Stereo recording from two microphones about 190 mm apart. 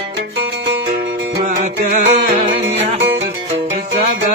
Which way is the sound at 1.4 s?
40° right (ahead or behind).